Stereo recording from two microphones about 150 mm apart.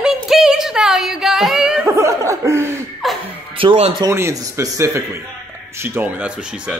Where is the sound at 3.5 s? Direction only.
35° right (ahead or behind).